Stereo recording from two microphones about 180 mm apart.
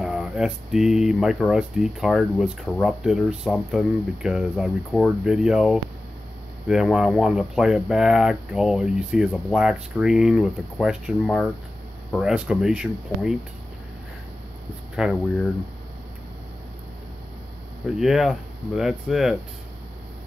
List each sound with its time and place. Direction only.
0.0 s speech: 5° right (ahead or behind)
15.0 s speech: 5° right (ahead or behind)
17.8 s speech: centre (ahead or behind)